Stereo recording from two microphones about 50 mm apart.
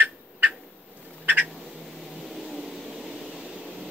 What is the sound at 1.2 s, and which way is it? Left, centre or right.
Frog, right.